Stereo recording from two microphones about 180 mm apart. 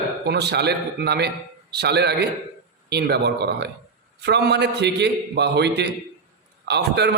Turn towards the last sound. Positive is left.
turn(degrees=-70)  # may be behind; listen again after turning